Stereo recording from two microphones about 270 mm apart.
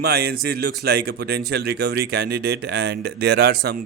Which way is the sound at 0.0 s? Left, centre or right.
Right.